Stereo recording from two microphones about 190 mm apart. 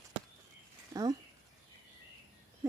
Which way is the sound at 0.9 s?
20° right (ahead or behind).